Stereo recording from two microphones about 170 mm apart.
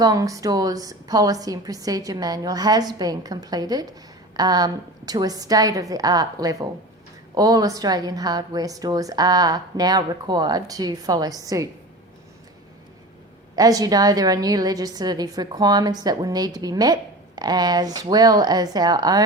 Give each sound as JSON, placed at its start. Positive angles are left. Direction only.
{"t": 0.0, "sound": "a woman's voice", "side_deg": -20}
{"t": 13.6, "sound": "a woman's voice", "side_deg": -20}